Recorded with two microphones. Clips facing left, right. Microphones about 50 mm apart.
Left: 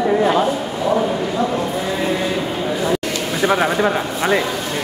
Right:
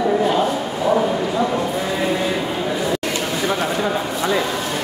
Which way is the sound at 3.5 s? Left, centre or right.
Left.